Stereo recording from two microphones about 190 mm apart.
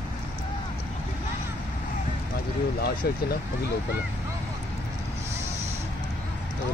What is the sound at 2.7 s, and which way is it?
Speech, 55° left (ahead or behind).